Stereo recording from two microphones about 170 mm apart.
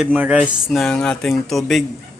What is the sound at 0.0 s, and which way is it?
Speech, 5° right (ahead or behind).